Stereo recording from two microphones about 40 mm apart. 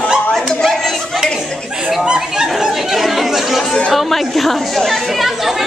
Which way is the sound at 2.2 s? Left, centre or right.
Centre.